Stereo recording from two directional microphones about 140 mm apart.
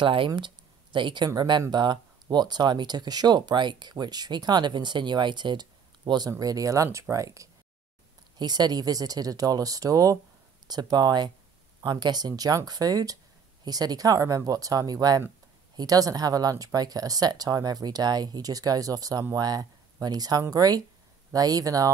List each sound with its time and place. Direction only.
0.0 s speech: 40° right (ahead or behind)